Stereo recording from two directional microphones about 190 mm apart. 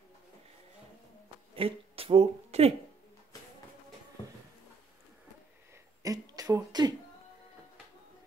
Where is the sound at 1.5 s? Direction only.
30° right (ahead or behind).